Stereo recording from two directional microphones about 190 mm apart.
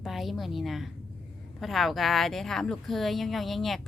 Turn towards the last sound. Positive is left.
turn(degrees=0)  # may be behind; listen again after turning